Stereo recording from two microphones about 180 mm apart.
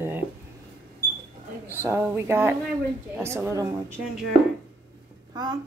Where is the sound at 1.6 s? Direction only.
15° left (ahead or behind).